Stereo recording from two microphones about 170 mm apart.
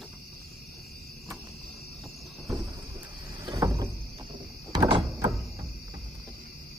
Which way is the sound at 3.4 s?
20° right (ahead or behind).